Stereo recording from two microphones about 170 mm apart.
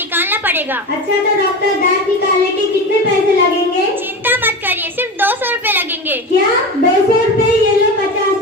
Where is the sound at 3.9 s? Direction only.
10° right (ahead or behind).